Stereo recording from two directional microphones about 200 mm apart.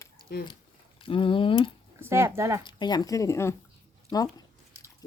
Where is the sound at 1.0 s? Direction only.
25° left (ahead or behind).